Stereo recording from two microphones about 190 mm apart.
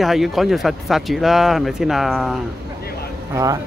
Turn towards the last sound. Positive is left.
turn(degrees=-15)  # may be behind; listen again after turning